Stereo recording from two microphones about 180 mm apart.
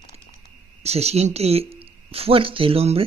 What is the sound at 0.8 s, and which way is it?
Speech, 35° right (ahead or behind).